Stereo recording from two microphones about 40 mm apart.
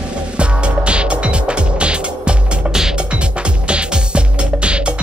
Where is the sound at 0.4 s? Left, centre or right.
Right.